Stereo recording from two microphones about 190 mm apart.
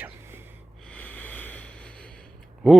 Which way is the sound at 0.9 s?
10° left (ahead or behind).